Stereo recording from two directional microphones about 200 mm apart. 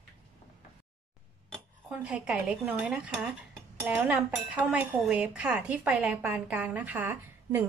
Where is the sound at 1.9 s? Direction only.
5° right (ahead or behind).